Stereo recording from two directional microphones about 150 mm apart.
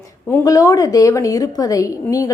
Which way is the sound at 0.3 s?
20° left (ahead or behind).